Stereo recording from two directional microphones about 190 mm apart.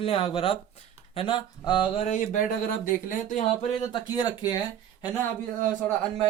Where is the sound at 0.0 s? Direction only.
30° left (ahead or behind).